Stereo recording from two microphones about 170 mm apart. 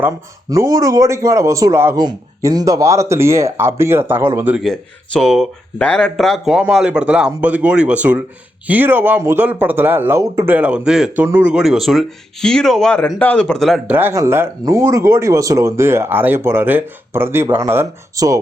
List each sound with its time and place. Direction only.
0.5 s speech: 20° right (ahead or behind)
4.6 s speech: centre (ahead or behind)
13.9 s speech: 15° right (ahead or behind)